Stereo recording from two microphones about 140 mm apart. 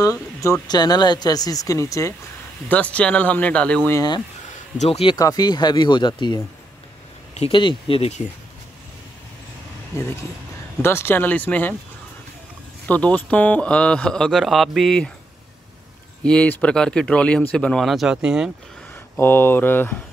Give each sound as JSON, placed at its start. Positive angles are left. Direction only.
{"t": 0.0, "sound": "speech", "side_deg": 20}
{"t": 2.7, "sound": "speech", "side_deg": 10}
{"t": 3.9, "sound": "speech", "side_deg": 30}
{"t": 4.7, "sound": "speech", "side_deg": 45}
{"t": 5.1, "sound": "speech", "side_deg": 25}
{"t": 9.9, "sound": "speech", "side_deg": 20}
{"t": 12.8, "sound": "speech", "side_deg": 10}
{"t": 16.3, "sound": "speech", "side_deg": 5}
{"t": 19.1, "sound": "speech", "side_deg": 15}